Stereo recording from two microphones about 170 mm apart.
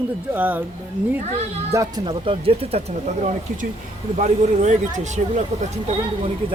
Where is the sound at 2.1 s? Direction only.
35° right (ahead or behind).